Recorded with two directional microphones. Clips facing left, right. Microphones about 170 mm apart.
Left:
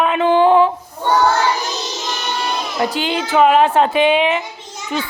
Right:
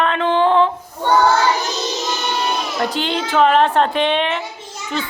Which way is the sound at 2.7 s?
5° left (ahead or behind).